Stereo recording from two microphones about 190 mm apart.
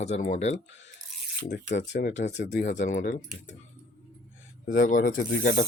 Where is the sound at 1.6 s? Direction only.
40° left (ahead or behind).